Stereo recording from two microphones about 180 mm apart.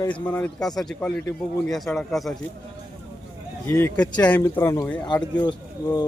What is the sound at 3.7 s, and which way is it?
A man's voice, 10° left (ahead or behind).